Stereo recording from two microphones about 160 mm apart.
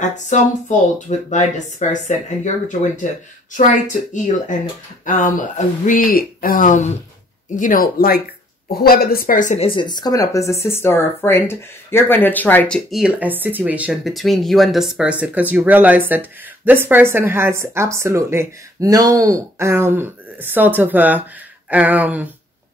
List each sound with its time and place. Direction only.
0.0 s speech: 50° left (ahead or behind)
9.7 s speech: 30° left (ahead or behind); by 13.0 s 5° left (ahead or behind)
13.0 s speech: 10° right (ahead or behind)